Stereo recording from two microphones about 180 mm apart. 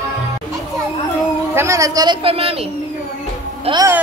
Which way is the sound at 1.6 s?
15° right (ahead or behind).